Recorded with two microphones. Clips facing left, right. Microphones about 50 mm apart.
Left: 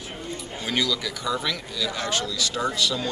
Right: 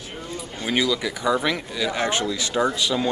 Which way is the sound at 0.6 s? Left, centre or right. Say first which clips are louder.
Right 4 dB; right.